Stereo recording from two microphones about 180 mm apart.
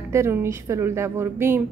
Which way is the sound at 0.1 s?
15° right (ahead or behind).